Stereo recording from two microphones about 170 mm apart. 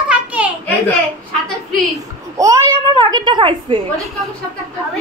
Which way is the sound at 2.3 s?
20° right (ahead or behind).